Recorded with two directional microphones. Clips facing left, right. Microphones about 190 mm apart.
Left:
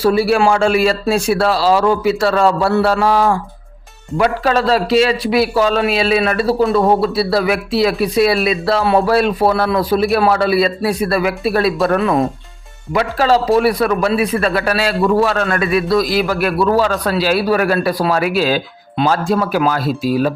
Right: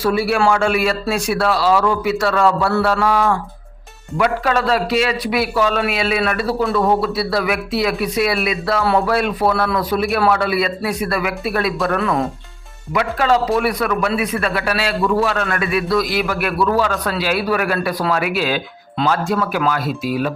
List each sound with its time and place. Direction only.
0.0 s a man's voice: 35° left (ahead or behind)
11.9 s speech: 20° left (ahead or behind)
12.9 s a man's voice: 35° left (ahead or behind)